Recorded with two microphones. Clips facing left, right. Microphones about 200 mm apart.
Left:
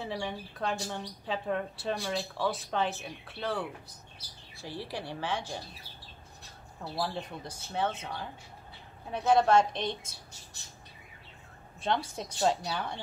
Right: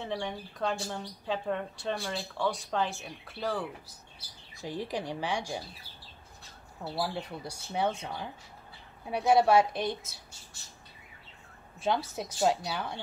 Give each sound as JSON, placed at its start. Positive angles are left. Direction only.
{"t": 0.0, "sound": "speech", "side_deg": 0}
{"t": 4.6, "sound": "speech", "side_deg": -15}
{"t": 6.8, "sound": "speech", "side_deg": -5}
{"t": 11.8, "sound": "speech", "side_deg": -5}